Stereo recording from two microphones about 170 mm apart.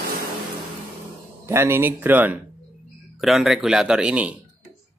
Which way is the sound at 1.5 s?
15° right (ahead or behind).